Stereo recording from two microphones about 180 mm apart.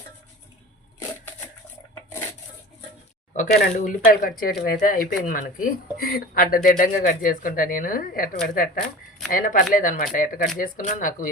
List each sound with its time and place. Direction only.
3.3 s speech: 45° left (ahead or behind)